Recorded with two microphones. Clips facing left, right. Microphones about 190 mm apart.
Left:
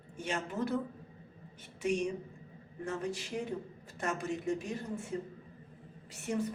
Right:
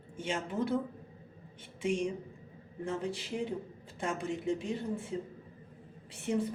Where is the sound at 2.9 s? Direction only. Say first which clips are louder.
Right 1 dB; 30° right (ahead or behind).